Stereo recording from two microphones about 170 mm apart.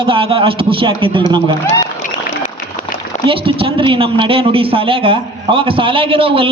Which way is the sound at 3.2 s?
30° right (ahead or behind).